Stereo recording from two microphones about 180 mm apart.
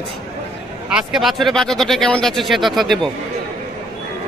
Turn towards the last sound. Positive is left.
turn(degrees=0)  # may be behind; listen again after turning